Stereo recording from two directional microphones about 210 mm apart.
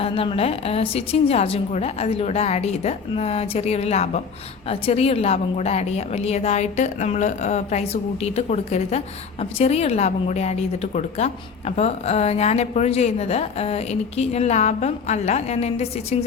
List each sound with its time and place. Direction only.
0.0 s a woman's voice: 25° left (ahead or behind)